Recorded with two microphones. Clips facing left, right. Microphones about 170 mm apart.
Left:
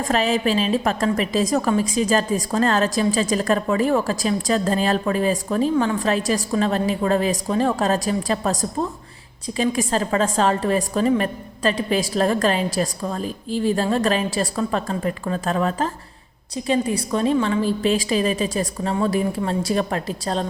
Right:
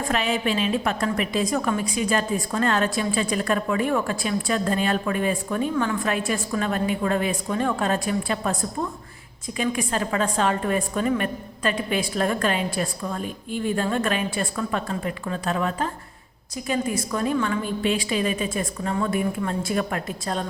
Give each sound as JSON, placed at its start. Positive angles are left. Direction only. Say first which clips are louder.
{"t": 0.1, "sound": "a woman's voice", "louder": "left 5 dB", "side_deg": 35}
{"t": 16.6, "sound": "a woman's voice", "louder": "left 4 dB", "side_deg": 25}